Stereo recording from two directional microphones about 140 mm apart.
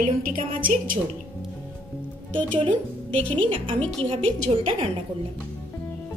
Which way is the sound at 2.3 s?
35° right (ahead or behind).